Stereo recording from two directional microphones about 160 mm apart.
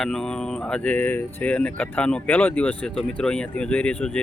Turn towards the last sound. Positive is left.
turn(degrees=5)  # may be behind; listen again after turning